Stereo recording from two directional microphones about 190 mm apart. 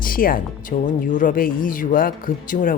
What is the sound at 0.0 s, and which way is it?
Speech, 50° left (ahead or behind).